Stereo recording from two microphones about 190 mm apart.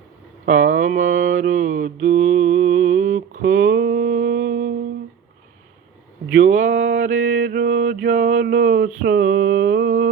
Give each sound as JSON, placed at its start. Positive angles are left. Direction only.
{"t": 0.4, "sound": "mantra", "side_deg": -40}
{"t": 6.4, "sound": "a sound", "side_deg": -40}
{"t": 9.0, "sound": "mantra", "side_deg": -50}